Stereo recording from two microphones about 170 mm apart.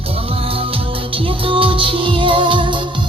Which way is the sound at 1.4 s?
30° right (ahead or behind).